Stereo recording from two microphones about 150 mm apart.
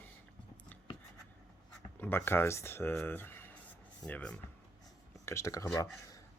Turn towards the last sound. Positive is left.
turn(degrees=25)  # may be behind; listen again after turning